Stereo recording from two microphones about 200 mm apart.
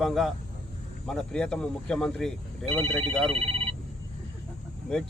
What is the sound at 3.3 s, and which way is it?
Telephone bell ringing, 30° right (ahead or behind).